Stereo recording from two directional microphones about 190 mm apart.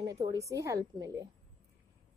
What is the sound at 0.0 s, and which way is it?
A woman's voice, 20° right (ahead or behind).